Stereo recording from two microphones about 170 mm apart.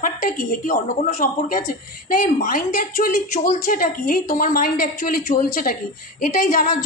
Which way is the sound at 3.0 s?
55° left (ahead or behind).